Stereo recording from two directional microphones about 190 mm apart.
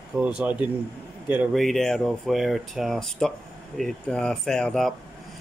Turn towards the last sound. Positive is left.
turn(degrees=5)  # may be behind; listen again after turning